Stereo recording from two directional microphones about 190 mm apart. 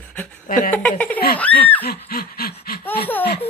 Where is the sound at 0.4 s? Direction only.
45° left (ahead or behind).